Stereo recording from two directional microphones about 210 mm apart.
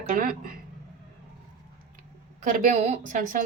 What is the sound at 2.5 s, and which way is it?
Speech, 30° right (ahead or behind).